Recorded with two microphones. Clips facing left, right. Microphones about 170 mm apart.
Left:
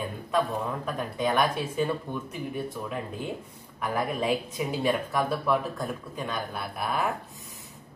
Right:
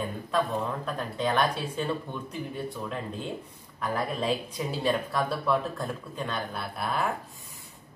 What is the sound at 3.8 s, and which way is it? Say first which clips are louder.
Speech: left 1 dB; 15° left (ahead or behind).